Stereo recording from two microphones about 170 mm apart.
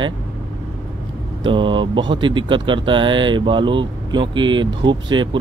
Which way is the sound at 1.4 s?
30° right (ahead or behind).